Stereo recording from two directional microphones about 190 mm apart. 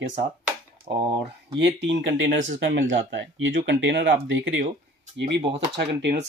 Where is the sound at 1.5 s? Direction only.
65° right (ahead or behind).